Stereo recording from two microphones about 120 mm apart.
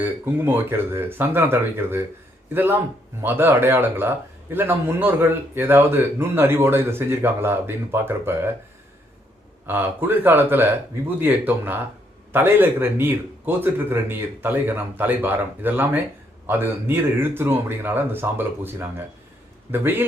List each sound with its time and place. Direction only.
0.0 s a man's voice: 20° right (ahead or behind)
9.6 s a man's voice: 15° right (ahead or behind)